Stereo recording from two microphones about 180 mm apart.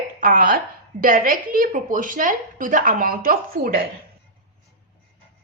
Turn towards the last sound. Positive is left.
turn(degrees=-50)  # may be behind; listen again after turning